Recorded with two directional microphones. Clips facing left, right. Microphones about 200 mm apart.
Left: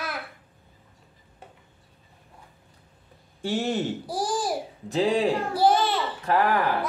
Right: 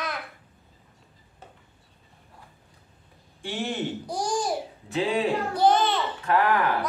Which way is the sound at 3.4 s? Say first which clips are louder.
Left 5 dB; 40° left (ahead or behind).